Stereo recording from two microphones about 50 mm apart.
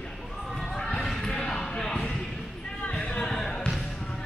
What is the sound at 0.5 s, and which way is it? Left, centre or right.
Basketball bounce, centre.